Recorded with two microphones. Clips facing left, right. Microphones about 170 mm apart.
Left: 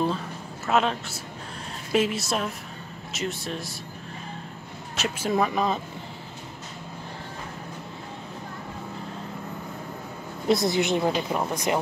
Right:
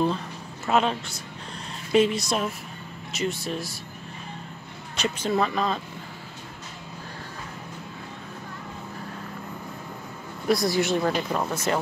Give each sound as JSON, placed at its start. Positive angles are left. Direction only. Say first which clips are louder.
{"t": 0.7, "sound": "speech", "louder": "right 1 dB", "side_deg": 0}
{"t": 4.9, "sound": "speech", "louder": "right 1 dB", "side_deg": 5}
{"t": 5.3, "sound": "speech", "louder": "left 1 dB", "side_deg": 15}
{"t": 10.5, "sound": "speech", "louder": "even", "side_deg": 20}